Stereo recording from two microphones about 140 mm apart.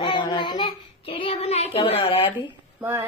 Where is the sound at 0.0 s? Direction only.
30° left (ahead or behind).